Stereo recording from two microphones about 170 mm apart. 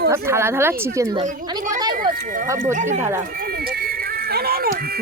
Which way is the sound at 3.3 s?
60° right (ahead or behind).